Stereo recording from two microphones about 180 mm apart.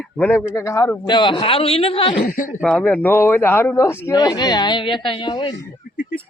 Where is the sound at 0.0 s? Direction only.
10° left (ahead or behind); by 2.1 s 30° left (ahead or behind).